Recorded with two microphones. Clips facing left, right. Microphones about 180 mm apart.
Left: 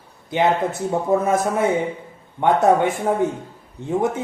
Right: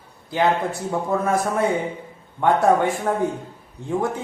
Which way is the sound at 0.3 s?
20° left (ahead or behind).